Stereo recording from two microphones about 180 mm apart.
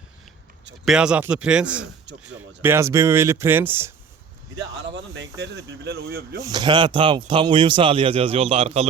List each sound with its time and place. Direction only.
0.9 s a man's voice: 5° right (ahead or behind)
5.1 s speech: 85° right; by 6.4 s 60° right (ahead or behind)
6.4 s speech: 25° right (ahead or behind)